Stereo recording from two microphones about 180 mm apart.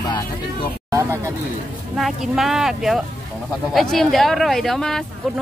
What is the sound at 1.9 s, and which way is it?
Speech, centre (ahead or behind).